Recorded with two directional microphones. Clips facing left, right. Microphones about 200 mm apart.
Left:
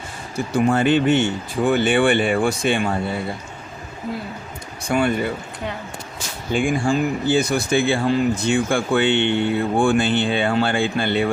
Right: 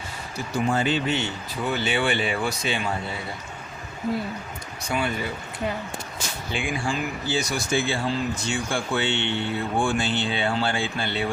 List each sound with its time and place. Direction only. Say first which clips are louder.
0.5 s speech: left 7 dB; 55° left (ahead or behind)
4.9 s speech: left 7 dB; 50° left (ahead or behind)
6.5 s speech: left 9 dB; 45° left (ahead or behind)